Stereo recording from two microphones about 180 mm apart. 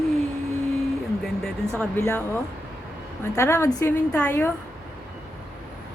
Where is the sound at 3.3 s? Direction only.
15° left (ahead or behind).